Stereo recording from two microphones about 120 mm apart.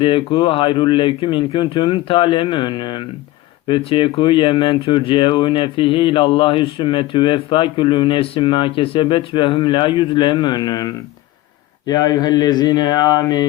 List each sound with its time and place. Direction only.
0.0 s speech: 45° left (ahead or behind)